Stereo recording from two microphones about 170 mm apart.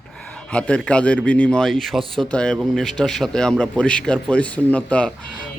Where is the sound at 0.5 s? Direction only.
5° left (ahead or behind).